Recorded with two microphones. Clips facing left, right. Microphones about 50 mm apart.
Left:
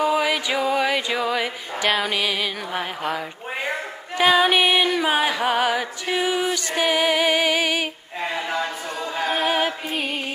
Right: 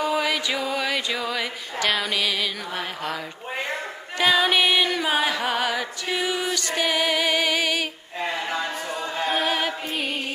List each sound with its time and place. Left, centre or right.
0.0 s music: centre
4.2 s music: centre
9.1 s music: centre